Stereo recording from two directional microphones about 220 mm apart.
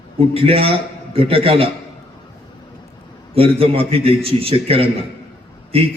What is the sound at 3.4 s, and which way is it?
A man's voice, 25° right (ahead or behind).